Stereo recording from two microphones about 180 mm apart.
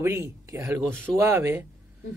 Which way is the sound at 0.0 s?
15° right (ahead or behind).